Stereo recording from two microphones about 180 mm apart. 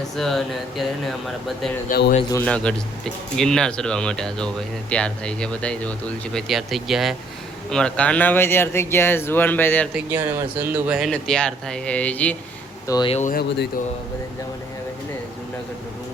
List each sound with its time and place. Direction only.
0.2 s speech: centre (ahead or behind)
1.9 s a man's voice: 55° left (ahead or behind)
2.3 s speech: 10° left (ahead or behind)
9.9 s speech: 10° right (ahead or behind)
11.1 s speech: 5° left (ahead or behind)
12.9 s speech: 25° left (ahead or behind)
13.1 s a man's voice: 45° left (ahead or behind)